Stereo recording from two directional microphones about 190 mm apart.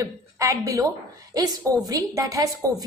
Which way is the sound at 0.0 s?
15° right (ahead or behind).